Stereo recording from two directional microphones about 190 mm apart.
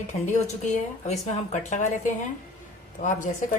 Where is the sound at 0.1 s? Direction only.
35° left (ahead or behind).